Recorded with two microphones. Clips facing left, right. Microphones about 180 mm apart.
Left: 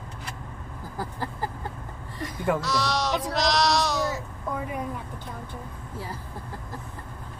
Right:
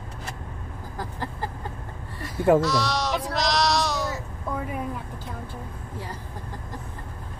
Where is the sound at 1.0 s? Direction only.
10° left (ahead or behind).